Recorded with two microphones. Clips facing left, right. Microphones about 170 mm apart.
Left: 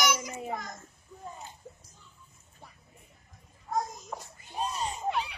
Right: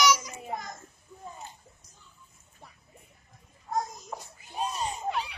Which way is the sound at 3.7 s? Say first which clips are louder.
Even; 5° right (ahead or behind).